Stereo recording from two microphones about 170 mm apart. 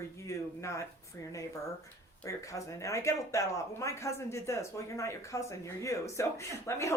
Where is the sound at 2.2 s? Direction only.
20° left (ahead or behind).